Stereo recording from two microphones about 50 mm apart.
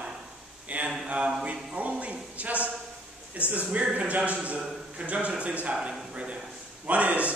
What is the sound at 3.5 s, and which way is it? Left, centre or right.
A man's voice, right.